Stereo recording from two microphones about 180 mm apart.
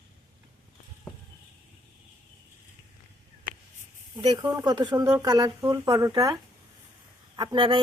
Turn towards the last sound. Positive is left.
turn(degrees=-30)  # may be behind; listen again after turning